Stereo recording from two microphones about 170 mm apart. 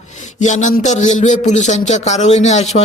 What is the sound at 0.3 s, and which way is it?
A man's voice, 45° left (ahead or behind).